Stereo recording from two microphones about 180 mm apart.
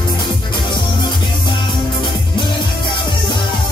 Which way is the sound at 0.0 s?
25° left (ahead or behind).